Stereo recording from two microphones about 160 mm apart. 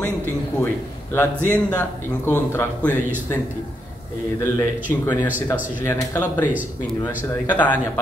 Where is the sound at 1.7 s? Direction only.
15° left (ahead or behind).